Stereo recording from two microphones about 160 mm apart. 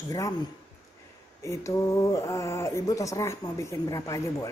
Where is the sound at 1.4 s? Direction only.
20° left (ahead or behind).